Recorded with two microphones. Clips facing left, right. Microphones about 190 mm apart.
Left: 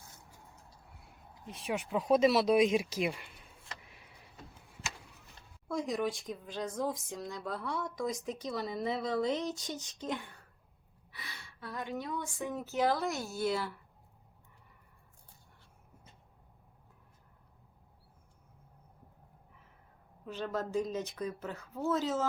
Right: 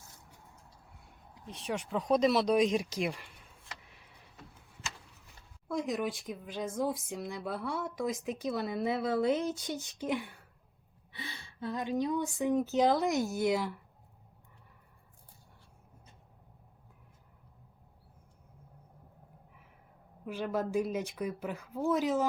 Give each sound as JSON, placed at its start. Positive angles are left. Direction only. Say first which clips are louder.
{"t": 1.5, "sound": "speech", "louder": "even", "side_deg": 10}
{"t": 5.6, "sound": "speech", "louder": "even", "side_deg": 0}
{"t": 11.1, "sound": "a woman's voice", "louder": "right 5 dB", "side_deg": -25}
{"t": 20.2, "sound": "speech", "louder": "right 3 dB", "side_deg": -10}